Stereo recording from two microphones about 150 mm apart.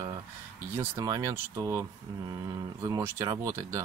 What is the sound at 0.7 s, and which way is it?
Speech, 20° right (ahead or behind).